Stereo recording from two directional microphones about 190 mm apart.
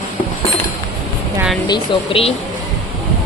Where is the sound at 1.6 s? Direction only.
25° left (ahead or behind).